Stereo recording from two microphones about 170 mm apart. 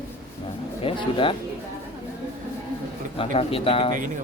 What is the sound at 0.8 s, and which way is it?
Speech, 30° left (ahead or behind).